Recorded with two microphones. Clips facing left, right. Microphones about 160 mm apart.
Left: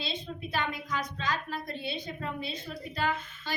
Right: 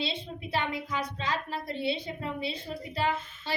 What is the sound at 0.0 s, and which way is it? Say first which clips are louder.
A woman's voice: right 2 dB; 30° right (ahead or behind).